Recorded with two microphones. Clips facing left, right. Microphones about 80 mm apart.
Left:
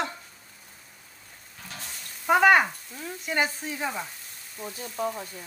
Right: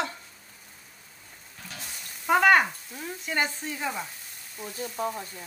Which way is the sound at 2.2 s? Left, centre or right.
Centre.